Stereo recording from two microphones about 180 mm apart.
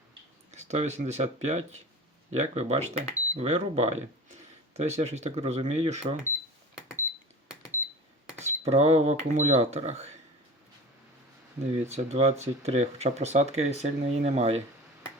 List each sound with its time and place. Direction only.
0.5 s speech: 40° right (ahead or behind)
8.4 s speech: 35° right (ahead or behind)
11.7 s speech: 40° right (ahead or behind)